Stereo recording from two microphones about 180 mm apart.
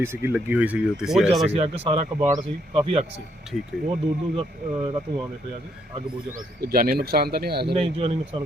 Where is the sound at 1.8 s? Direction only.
30° right (ahead or behind).